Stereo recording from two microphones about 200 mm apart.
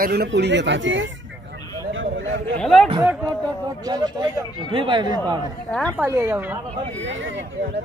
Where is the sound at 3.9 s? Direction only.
20° right (ahead or behind).